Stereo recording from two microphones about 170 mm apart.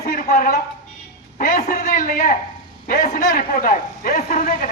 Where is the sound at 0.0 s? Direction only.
50° left (ahead or behind).